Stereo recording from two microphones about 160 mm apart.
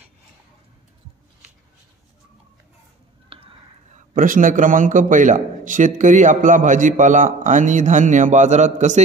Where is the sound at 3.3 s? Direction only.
35° right (ahead or behind).